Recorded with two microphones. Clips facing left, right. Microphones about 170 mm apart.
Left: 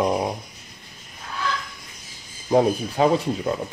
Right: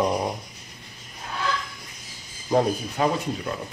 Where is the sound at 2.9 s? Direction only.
30° left (ahead or behind).